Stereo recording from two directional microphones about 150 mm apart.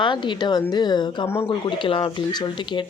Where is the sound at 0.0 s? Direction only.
30° left (ahead or behind).